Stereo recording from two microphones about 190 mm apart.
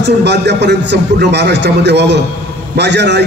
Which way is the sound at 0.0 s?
65° right (ahead or behind).